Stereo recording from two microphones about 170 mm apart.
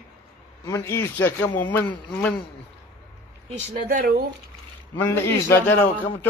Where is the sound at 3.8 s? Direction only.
60° right (ahead or behind).